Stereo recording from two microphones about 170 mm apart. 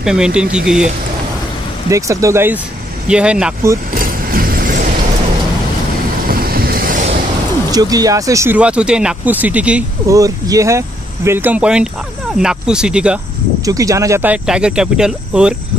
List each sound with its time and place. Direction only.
0.0 s speech: 5° right (ahead or behind)
1.9 s speech: 20° right (ahead or behind)
3.9 s vehicle: 55° right (ahead or behind)
6.2 s vehicle: 60° right (ahead or behind)
7.7 s speech: 20° right (ahead or behind)
10.0 s speech: 20° right (ahead or behind)
13.7 s speech: 20° right (ahead or behind)